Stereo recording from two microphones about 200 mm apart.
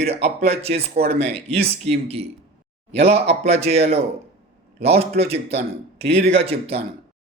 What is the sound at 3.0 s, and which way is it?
A man's voice, 30° right (ahead or behind).